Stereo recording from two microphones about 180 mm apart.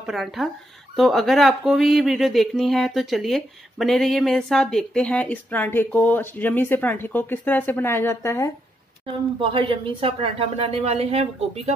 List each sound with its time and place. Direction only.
0.0 s speech: centre (ahead or behind); by 8.5 s 15° left (ahead or behind)
9.0 s speech: 30° right (ahead or behind)